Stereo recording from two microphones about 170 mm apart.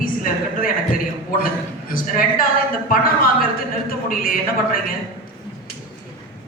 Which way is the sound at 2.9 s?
55° left (ahead or behind).